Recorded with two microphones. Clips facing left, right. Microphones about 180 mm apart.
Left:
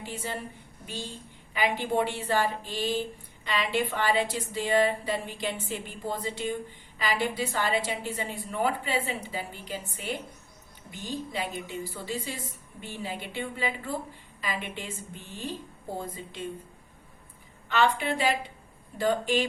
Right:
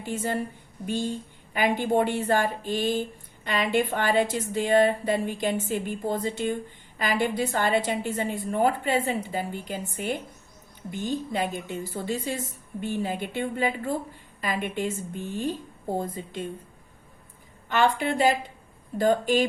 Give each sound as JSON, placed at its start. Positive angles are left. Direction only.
{"t": 0.0, "sound": "a woman's voice", "side_deg": -50}
{"t": 17.7, "sound": "a woman's voice", "side_deg": -50}